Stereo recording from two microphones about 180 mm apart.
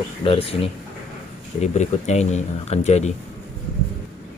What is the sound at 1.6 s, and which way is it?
Speech, 40° left (ahead or behind).